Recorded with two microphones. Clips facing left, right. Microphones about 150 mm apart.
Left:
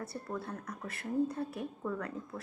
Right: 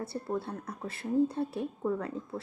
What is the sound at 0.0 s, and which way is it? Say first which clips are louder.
A woman's voice: right 5 dB; 30° right (ahead or behind).